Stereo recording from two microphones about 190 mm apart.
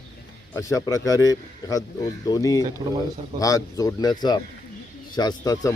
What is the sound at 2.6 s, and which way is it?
Speech, 20° right (ahead or behind).